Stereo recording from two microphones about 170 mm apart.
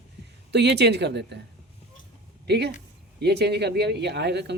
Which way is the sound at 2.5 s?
75° right (ahead or behind).